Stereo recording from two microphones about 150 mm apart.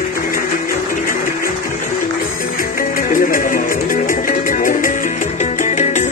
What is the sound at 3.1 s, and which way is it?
Music, 65° left (ahead or behind).